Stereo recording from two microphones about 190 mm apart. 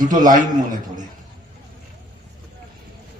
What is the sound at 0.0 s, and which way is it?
A man's voice, 45° right (ahead or behind).